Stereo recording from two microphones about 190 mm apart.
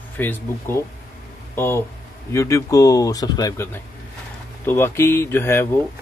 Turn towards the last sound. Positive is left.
turn(degrees=15)  # may be behind; listen again after turning